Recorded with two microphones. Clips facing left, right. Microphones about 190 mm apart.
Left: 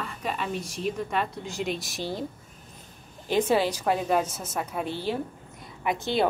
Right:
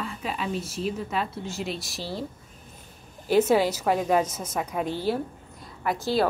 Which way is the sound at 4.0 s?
5° left (ahead or behind).